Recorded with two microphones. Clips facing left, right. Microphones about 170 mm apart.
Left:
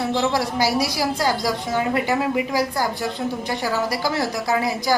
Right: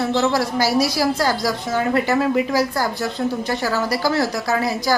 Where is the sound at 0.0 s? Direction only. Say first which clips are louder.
Right 2 dB; 15° left (ahead or behind).